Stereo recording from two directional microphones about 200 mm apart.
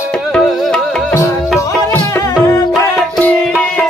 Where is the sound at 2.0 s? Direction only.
15° left (ahead or behind).